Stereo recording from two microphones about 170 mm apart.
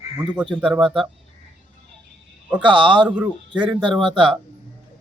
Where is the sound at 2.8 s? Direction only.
30° right (ahead or behind).